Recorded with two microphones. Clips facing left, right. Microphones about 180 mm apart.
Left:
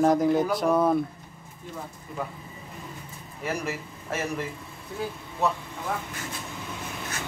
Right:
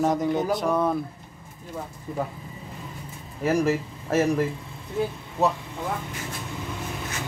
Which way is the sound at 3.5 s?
45° right (ahead or behind).